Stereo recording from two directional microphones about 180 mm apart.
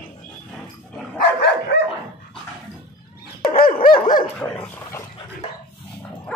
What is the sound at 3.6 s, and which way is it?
Dog, 55° left (ahead or behind).